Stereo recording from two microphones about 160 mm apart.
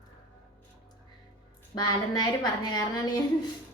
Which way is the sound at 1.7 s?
25° left (ahead or behind).